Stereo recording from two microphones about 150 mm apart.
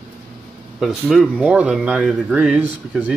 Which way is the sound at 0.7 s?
Centre (ahead or behind).